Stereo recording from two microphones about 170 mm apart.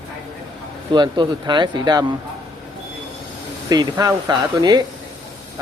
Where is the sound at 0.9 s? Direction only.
25° right (ahead or behind).